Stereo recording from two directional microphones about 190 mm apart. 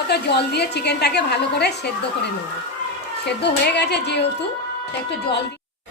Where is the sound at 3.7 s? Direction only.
60° left (ahead or behind).